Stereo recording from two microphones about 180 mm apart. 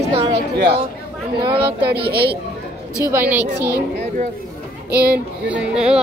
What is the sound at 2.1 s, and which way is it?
Speech, 60° right (ahead or behind).